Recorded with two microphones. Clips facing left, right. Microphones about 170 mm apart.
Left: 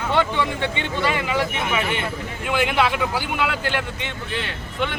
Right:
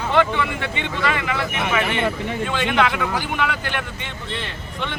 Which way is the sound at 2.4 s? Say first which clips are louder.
Left 1 dB; 10° left (ahead or behind).